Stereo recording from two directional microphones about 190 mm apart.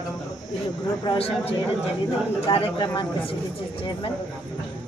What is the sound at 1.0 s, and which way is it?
Speech, 25° left (ahead or behind).